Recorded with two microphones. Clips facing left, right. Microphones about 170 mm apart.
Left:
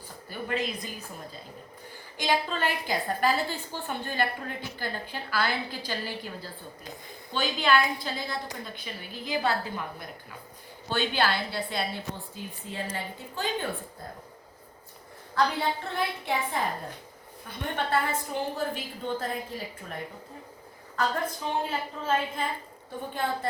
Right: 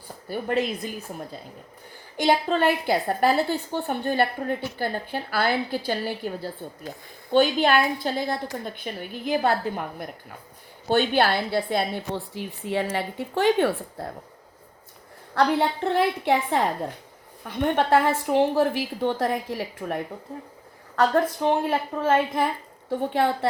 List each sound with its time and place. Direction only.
0.3 s a woman's voice: 55° right (ahead or behind)
2.1 s a woman's voice: 50° right (ahead or behind)
12.3 s a woman's voice: 75° right (ahead or behind)
15.4 s a woman's voice: 65° right (ahead or behind)
22.9 s a woman's voice: 70° right (ahead or behind)